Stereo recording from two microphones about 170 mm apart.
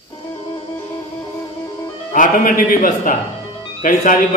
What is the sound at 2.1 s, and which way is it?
A man's voice, 55° left (ahead or behind).